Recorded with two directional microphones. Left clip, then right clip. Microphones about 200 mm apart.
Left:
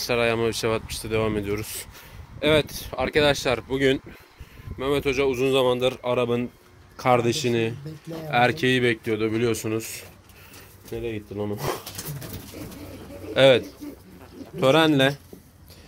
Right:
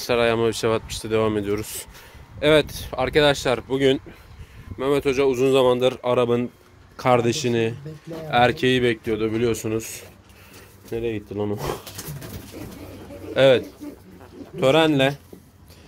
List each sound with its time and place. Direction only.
0.0 s speech: 15° right (ahead or behind)
4.7 s speech: 20° right (ahead or behind)
7.0 s speech: 15° right (ahead or behind)
10.9 s speech: 25° right (ahead or behind)
13.3 s speech: centre (ahead or behind)